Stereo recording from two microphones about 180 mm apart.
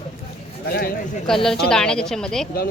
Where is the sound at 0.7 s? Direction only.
60° left (ahead or behind).